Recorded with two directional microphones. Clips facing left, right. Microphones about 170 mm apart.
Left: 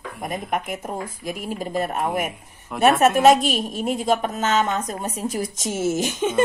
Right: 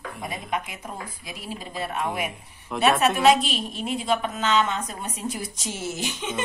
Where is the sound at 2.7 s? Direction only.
5° left (ahead or behind).